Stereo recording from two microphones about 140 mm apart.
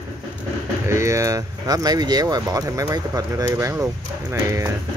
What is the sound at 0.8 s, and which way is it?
Speech, 20° right (ahead or behind).